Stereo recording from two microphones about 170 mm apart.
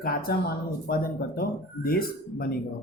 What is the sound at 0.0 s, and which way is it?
Speech, 60° left (ahead or behind).